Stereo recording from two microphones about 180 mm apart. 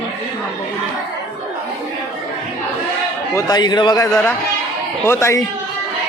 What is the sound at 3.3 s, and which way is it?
A man's voice, 20° left (ahead or behind).